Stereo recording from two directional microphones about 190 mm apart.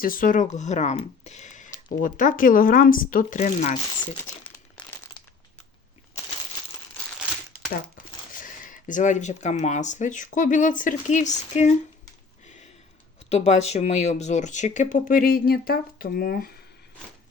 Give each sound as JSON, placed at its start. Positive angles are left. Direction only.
{"t": 0.0, "sound": "speech", "side_deg": 45}
{"t": 4.8, "sound": "crumpling", "side_deg": 5}
{"t": 7.9, "sound": "speech", "side_deg": 45}
{"t": 13.3, "sound": "speech", "side_deg": 35}